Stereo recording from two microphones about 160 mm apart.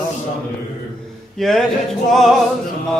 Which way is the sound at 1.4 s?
Centre (ahead or behind).